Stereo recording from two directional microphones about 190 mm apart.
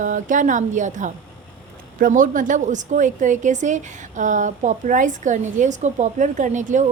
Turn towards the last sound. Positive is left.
turn(degrees=-40)  # may be behind; listen again after turning